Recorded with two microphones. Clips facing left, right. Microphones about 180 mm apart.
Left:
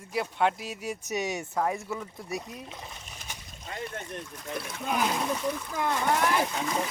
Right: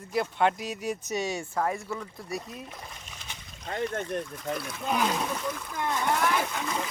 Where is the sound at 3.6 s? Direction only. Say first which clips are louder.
Right 6 dB; 50° right (ahead or behind).